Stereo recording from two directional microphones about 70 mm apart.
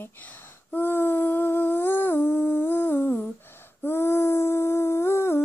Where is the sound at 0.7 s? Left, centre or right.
Left.